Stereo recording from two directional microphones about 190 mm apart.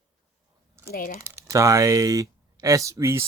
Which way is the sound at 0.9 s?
50° left (ahead or behind).